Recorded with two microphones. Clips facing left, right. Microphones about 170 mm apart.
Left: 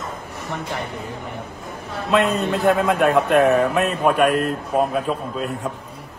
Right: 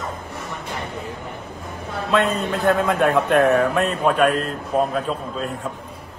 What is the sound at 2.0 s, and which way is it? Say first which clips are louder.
A man's voice: left 2 dB; centre (ahead or behind).